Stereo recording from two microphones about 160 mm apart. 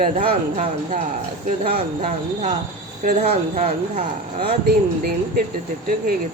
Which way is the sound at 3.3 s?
45° right (ahead or behind).